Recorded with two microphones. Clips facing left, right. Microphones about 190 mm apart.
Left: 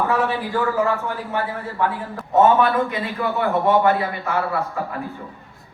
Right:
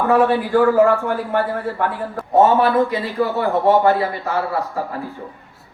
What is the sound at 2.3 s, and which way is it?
A man's voice, 35° right (ahead or behind).